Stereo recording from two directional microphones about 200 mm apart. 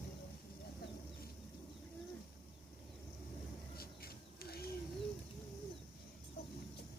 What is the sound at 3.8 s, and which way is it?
Bird, 50° left (ahead or behind).